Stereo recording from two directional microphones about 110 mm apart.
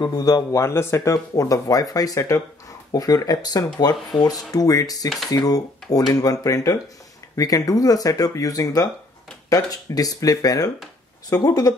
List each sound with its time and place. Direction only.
0.0 s speech: 35° left (ahead or behind)